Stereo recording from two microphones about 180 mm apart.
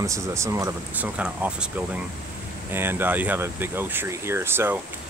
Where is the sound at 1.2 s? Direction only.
5° right (ahead or behind).